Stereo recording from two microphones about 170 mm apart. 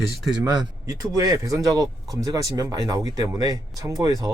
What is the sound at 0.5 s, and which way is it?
Speech, 20° right (ahead or behind).